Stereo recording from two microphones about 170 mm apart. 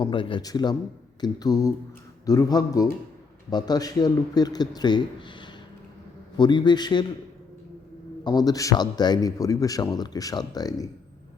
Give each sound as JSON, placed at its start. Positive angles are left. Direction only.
{"t": 0.0, "sound": "speech", "side_deg": 30}
{"t": 8.2, "sound": "speech", "side_deg": 25}